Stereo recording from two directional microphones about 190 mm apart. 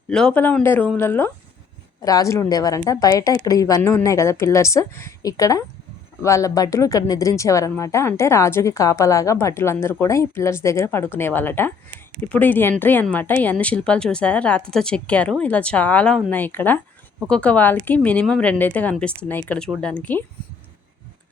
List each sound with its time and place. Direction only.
0.1 s a woman's voice: 5° left (ahead or behind)